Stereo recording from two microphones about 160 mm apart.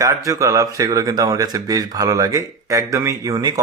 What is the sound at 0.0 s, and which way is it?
Speech, 20° right (ahead or behind).